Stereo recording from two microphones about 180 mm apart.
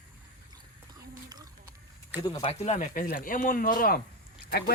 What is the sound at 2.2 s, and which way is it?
Speech, 30° left (ahead or behind).